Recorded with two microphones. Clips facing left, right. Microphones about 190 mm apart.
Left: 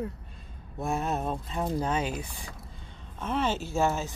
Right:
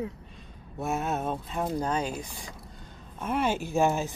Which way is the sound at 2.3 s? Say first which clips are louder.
Right 1 dB; 10° right (ahead or behind).